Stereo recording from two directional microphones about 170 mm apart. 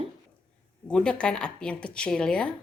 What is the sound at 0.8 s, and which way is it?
Speech, 5° left (ahead or behind).